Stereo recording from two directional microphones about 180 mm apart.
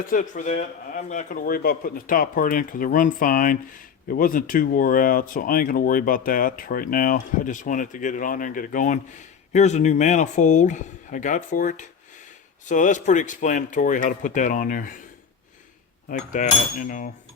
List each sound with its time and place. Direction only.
0.1 s a man's voice: 45° left (ahead or behind)
16.0 s a man's voice: 45° left (ahead or behind)